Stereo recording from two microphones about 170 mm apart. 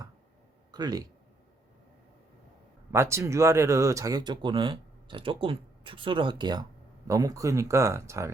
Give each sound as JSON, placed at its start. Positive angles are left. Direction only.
{"t": 0.7, "sound": "speech", "side_deg": -25}
{"t": 2.9, "sound": "speech", "side_deg": -15}